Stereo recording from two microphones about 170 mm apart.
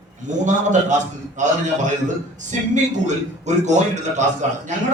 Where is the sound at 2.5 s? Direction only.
45° right (ahead or behind).